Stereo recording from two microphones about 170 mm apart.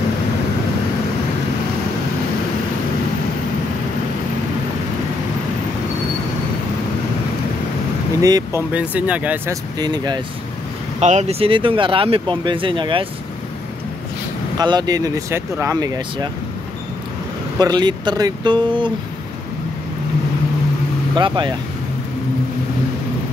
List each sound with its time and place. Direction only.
8.2 s speech: 20° right (ahead or behind)
9.8 s speech: 25° right (ahead or behind)
11.0 s speech: 40° right (ahead or behind)
14.6 s speech: 25° right (ahead or behind)
17.6 s speech: 25° right (ahead or behind)
21.2 s speech: 25° right (ahead or behind)